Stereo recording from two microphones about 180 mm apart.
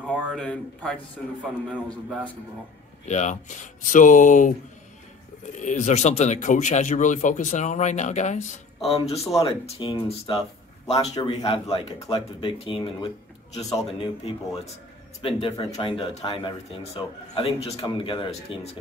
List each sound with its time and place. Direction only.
0.2 s a man's voice: centre (ahead or behind)
3.1 s speech: 40° left (ahead or behind)
13.6 s speech: centre (ahead or behind)
13.9 s speech: 30° left (ahead or behind)
15.4 s speech: 25° left (ahead or behind)